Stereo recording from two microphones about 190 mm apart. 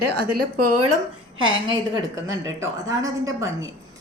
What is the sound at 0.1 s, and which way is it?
Speech, 45° right (ahead or behind).